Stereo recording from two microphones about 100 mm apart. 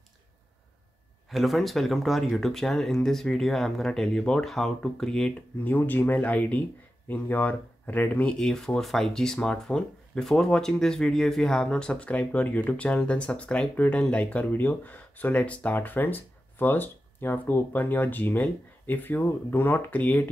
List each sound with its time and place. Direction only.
1.3 s speech: centre (ahead or behind)
5.6 s speech: 20° left (ahead or behind)